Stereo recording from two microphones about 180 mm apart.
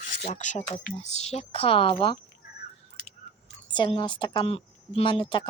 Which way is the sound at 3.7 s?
25° left (ahead or behind).